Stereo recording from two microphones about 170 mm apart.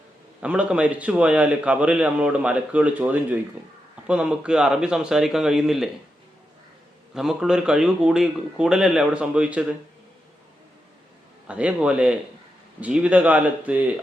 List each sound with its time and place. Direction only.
0.4 s a man's voice: 5° right (ahead or behind)
7.1 s a man's voice: 5° right (ahead or behind)
11.4 s a man's voice: 5° right (ahead or behind)